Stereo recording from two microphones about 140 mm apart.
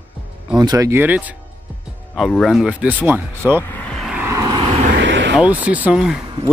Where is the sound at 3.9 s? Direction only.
5° right (ahead or behind).